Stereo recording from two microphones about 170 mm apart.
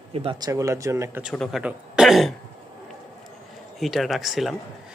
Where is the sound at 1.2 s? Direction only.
Centre (ahead or behind).